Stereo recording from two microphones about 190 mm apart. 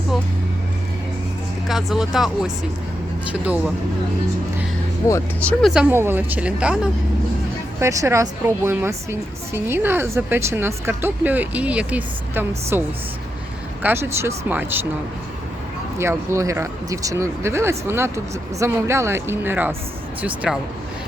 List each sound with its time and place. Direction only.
1.6 s a woman's voice: centre (ahead or behind)
5.0 s speech: 15° left (ahead or behind)
5.6 s a woman's voice: 5° right (ahead or behind)
13.8 s a woman's voice: 10° right (ahead or behind)
16.0 s a woman's voice: 15° right (ahead or behind)